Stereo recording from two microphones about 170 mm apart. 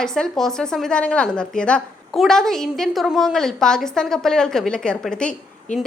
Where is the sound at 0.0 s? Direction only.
5° left (ahead or behind).